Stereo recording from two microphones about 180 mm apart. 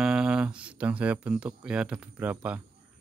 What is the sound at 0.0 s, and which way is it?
Speech, 5° right (ahead or behind).